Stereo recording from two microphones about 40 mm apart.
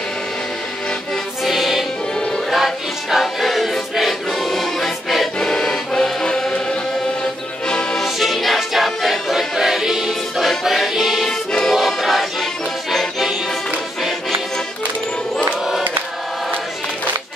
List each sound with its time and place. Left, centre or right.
1.4 s music: centre
5.4 s music: centre
8.0 s music: centre
11.2 s music: centre
11.7 s music: centre